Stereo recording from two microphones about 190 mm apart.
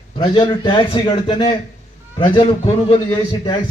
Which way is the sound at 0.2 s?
25° left (ahead or behind).